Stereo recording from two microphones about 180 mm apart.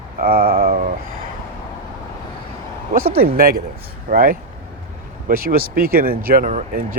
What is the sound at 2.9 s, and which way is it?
Speech, 55° right (ahead or behind).